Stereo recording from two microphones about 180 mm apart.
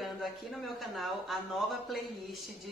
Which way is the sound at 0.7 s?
Centre (ahead or behind).